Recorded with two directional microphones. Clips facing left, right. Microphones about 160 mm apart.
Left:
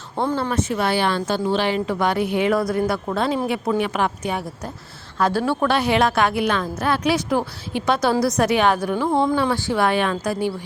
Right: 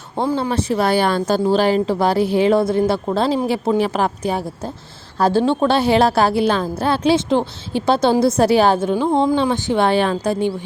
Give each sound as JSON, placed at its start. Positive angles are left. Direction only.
{"t": 0.2, "sound": "speech", "side_deg": -15}
{"t": 0.5, "sound": "a woman's voice", "side_deg": -35}